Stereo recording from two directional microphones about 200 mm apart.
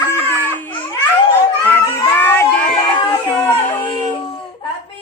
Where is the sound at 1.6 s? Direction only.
10° left (ahead or behind).